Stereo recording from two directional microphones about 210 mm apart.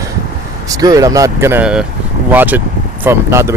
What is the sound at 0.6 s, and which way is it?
Speech, 15° right (ahead or behind).